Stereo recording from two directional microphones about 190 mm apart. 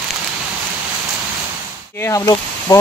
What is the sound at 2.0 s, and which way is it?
Speech, 15° left (ahead or behind).